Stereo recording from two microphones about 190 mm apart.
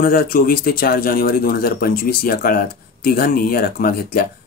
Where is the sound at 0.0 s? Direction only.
50° left (ahead or behind).